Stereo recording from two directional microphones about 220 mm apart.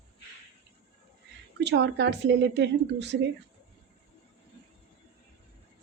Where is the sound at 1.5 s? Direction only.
50° right (ahead or behind).